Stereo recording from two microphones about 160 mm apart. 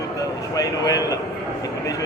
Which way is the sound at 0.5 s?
20° left (ahead or behind).